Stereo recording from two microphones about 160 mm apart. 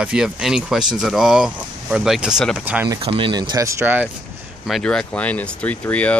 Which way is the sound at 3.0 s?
35° right (ahead or behind).